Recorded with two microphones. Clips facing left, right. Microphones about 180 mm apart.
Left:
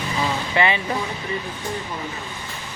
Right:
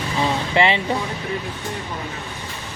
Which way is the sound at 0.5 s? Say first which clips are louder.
Right 2 dB; 25° right (ahead or behind).